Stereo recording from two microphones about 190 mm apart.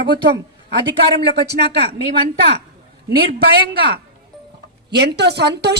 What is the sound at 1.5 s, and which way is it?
A woman's voice, 60° right (ahead or behind).